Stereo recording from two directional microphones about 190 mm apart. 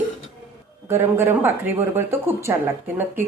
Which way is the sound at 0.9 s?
15° right (ahead or behind).